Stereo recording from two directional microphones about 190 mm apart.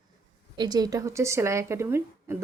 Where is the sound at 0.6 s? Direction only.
20° right (ahead or behind).